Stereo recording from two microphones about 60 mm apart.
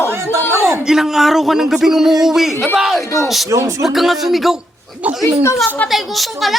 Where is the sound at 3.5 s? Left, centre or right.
Right.